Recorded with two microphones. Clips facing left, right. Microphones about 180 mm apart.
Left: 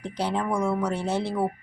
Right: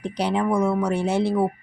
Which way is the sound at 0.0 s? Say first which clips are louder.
Right 4 dB; 15° right (ahead or behind).